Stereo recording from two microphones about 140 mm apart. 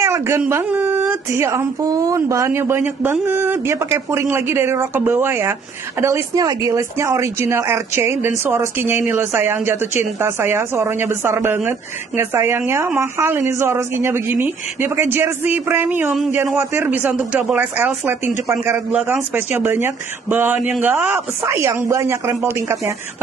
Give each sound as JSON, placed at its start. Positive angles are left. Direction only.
{"t": 0.0, "sound": "a sound", "side_deg": -20}
{"t": 0.5, "sound": "speech", "side_deg": -15}
{"t": 21.4, "sound": "speech", "side_deg": -20}